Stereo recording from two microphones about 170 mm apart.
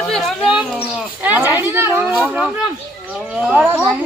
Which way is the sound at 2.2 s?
Centre (ahead or behind).